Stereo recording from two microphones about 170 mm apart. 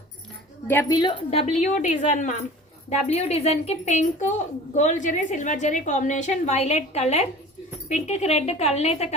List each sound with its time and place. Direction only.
0.7 s a woman's voice: 15° left (ahead or behind)
0.9 s a woman's voice: 30° left (ahead or behind)